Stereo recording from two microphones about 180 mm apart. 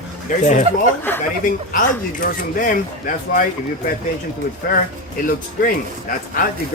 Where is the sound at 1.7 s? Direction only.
50° left (ahead or behind).